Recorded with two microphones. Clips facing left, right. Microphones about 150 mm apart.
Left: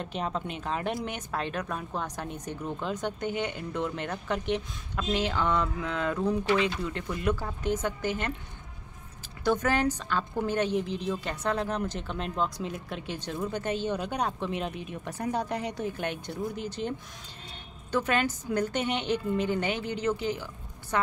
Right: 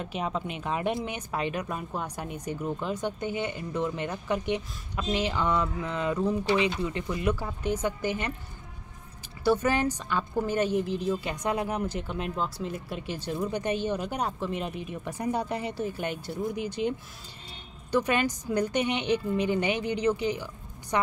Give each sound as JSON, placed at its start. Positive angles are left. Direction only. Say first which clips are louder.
{"t": 0.0, "sound": "speech", "louder": "right 1 dB", "side_deg": -5}
{"t": 9.4, "sound": "speech", "louder": "right 1 dB", "side_deg": -10}
{"t": 17.9, "sound": "speech", "louder": "right 2 dB", "side_deg": -15}